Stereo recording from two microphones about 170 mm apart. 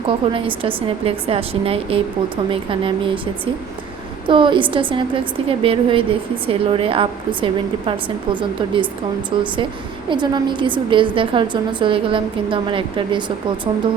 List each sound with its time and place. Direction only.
0.3 s a woman's voice: 30° right (ahead or behind)